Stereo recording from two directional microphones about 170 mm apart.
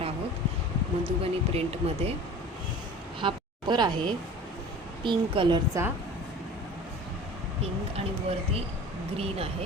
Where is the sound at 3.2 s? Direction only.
25° right (ahead or behind).